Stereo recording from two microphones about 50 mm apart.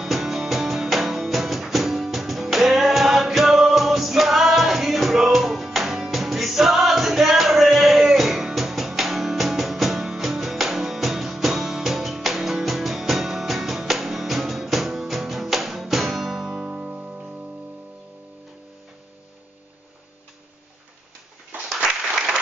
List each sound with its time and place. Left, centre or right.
0.0 s music: centre
16.6 s music: right
21.7 s applause: centre